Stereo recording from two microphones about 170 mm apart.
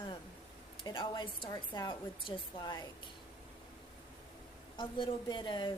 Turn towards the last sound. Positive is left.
turn(degrees=25)  # may be behind; listen again after turning